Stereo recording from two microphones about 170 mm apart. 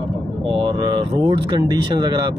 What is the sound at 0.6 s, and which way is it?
Speech, 30° right (ahead or behind).